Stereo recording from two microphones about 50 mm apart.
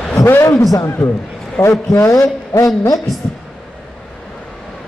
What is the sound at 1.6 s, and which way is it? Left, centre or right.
A man's voice, left.